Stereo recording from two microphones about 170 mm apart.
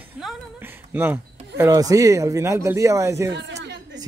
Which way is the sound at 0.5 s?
10° right (ahead or behind).